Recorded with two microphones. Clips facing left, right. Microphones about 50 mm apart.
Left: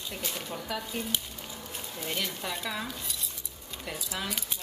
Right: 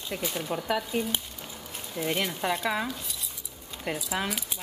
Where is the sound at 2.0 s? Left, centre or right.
Right.